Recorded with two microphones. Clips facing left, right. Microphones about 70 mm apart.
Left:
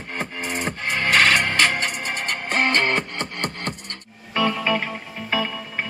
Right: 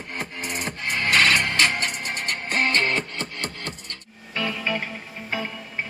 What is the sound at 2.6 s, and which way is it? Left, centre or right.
Music, left.